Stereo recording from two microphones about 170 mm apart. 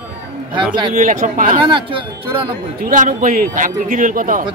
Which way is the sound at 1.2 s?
50° right (ahead or behind).